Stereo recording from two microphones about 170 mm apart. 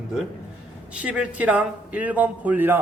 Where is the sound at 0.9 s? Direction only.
5° right (ahead or behind).